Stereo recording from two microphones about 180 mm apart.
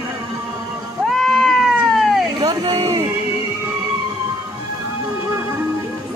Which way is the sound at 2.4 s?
25° right (ahead or behind).